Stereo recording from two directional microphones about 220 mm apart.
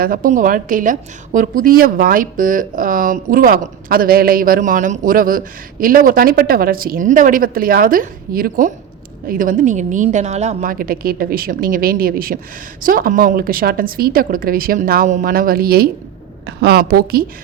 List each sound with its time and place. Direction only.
0.0 s a woman's voice: 40° right (ahead or behind)